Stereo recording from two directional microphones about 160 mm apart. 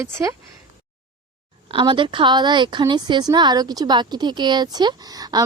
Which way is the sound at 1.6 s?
30° right (ahead or behind).